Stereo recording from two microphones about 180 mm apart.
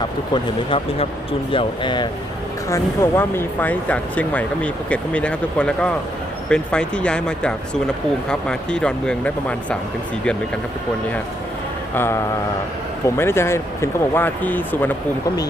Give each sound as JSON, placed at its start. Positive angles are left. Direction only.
{"t": 1.5, "sound": "speech", "side_deg": 25}
{"t": 2.6, "sound": "speech", "side_deg": 15}
{"t": 11.9, "sound": "speech", "side_deg": 15}